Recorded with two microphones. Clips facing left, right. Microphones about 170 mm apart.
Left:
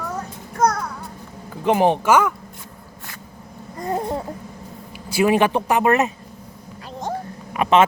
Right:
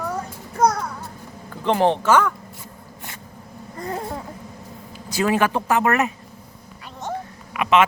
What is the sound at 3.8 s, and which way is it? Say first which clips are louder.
Babbling: left 5 dB; 25° left (ahead or behind).